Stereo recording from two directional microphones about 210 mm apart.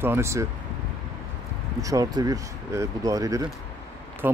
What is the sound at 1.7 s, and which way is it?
Speech, 15° right (ahead or behind).